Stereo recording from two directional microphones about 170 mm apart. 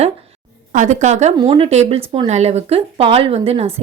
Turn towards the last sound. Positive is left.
turn(degrees=-35)  # may be behind; listen again after turning